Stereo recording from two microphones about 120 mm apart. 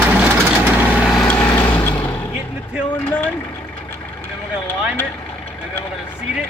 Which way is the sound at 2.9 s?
15° left (ahead or behind).